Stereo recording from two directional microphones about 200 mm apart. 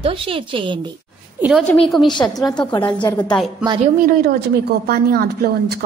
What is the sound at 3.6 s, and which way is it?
Speech, 25° right (ahead or behind).